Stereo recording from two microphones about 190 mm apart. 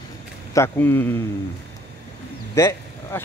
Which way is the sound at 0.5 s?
15° left (ahead or behind).